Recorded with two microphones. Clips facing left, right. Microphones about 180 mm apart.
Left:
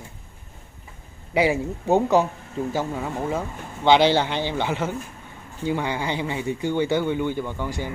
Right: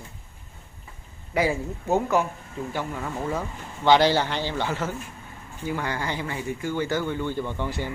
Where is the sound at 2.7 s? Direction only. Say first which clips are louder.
Left 3 dB; 25° left (ahead or behind).